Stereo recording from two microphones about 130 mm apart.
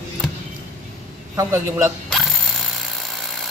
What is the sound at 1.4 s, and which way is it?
Speech, 20° right (ahead or behind).